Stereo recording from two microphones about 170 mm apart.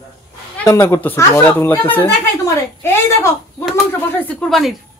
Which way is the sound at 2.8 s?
15° left (ahead or behind).